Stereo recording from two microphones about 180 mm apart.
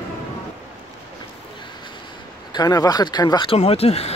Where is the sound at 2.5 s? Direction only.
20° left (ahead or behind).